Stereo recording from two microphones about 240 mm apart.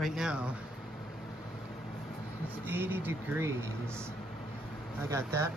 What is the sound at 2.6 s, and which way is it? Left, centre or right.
Speech, centre.